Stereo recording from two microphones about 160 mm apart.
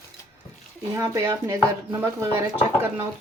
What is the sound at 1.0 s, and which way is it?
Speech, 20° right (ahead or behind).